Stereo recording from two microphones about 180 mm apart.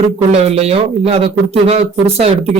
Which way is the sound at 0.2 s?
35° right (ahead or behind).